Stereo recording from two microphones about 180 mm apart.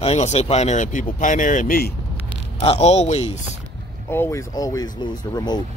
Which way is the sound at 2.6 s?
35° left (ahead or behind).